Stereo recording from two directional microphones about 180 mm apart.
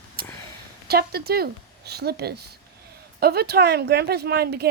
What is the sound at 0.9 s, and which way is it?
Speech, 60° right (ahead or behind).